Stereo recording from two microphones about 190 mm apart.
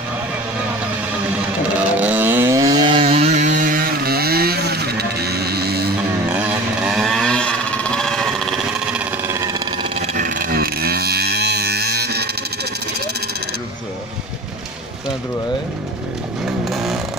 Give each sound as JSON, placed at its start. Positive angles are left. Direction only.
{"t": 1.8, "sound": "chainsaw", "side_deg": -10}
{"t": 6.3, "sound": "motorcycle", "side_deg": -5}
{"t": 10.1, "sound": "a sound", "side_deg": -45}